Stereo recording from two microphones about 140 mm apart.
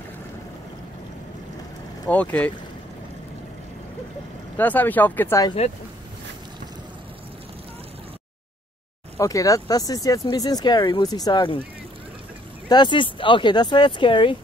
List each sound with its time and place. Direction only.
2.0 s speech: 10° left (ahead or behind)
4.6 s speech: 10° left (ahead or behind)
5.6 s speech: 50° left (ahead or behind)
9.2 s speech: 25° left (ahead or behind)
12.6 s speech: 30° left (ahead or behind)